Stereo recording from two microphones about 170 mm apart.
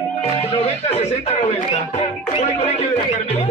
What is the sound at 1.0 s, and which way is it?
Speech, 35° left (ahead or behind).